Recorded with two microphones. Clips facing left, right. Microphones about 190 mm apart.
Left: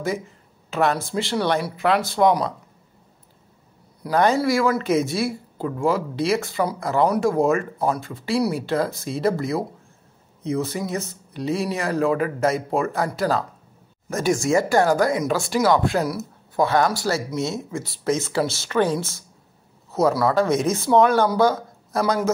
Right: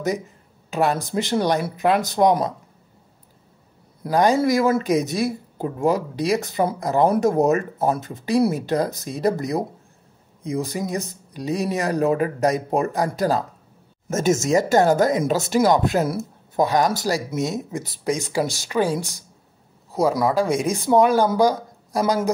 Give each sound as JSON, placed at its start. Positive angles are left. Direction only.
{"t": 0.7, "sound": "speech", "side_deg": -15}
{"t": 4.0, "sound": "a woman's voice", "side_deg": -15}